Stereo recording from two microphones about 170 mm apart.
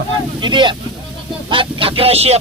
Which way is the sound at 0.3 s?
25° right (ahead or behind).